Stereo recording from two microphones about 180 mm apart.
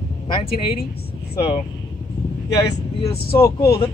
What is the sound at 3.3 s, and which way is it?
Speech, 15° left (ahead or behind).